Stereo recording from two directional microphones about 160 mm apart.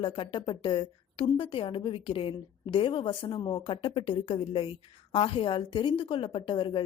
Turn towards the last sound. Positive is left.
turn(degrees=30)  # may be behind; listen again after turning